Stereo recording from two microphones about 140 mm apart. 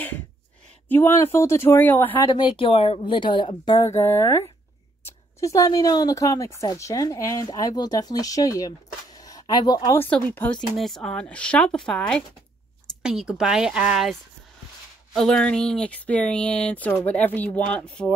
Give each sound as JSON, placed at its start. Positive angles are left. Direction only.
{"t": 0.8, "sound": "speech", "side_deg": 15}
{"t": 2.2, "sound": "speech", "side_deg": 35}
{"t": 10.0, "sound": "speech", "side_deg": 10}
{"t": 15.1, "sound": "speech", "side_deg": 5}